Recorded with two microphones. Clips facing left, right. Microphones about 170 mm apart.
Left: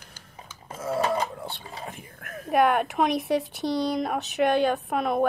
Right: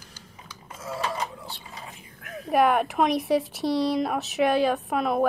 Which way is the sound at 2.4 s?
Centre (ahead or behind).